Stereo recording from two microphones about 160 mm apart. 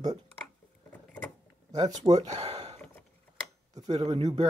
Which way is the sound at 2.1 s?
40° right (ahead or behind).